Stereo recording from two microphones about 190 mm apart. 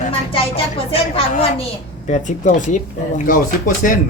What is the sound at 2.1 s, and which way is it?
Speech, 40° left (ahead or behind).